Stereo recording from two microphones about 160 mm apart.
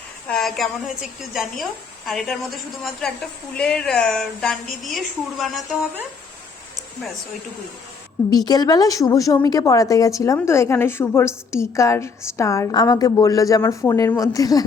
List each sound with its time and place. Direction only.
0.3 s a woman's voice: centre (ahead or behind)
8.4 s a woman's voice: 25° left (ahead or behind)